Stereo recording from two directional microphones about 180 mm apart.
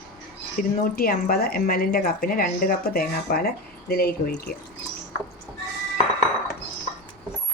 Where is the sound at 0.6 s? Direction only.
55° left (ahead or behind).